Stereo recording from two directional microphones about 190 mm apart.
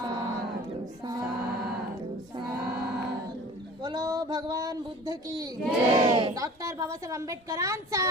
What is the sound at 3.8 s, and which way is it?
A woman's voice, 20° right (ahead or behind).